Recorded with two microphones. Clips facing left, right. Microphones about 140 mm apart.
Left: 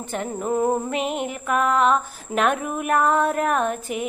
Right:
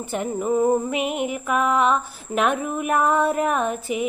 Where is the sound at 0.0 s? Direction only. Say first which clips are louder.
Right 2 dB; 5° right (ahead or behind).